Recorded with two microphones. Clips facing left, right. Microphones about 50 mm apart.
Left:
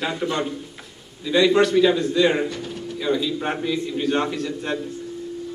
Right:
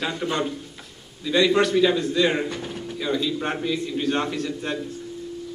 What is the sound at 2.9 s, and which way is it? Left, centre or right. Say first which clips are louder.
A man's voice: left 2 dB; centre.